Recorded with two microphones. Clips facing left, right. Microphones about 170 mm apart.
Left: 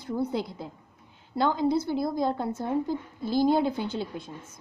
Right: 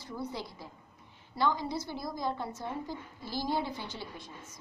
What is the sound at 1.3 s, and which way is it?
A woman's voice, 55° left (ahead or behind).